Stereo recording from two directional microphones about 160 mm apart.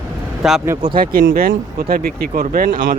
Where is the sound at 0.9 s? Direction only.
65° right (ahead or behind).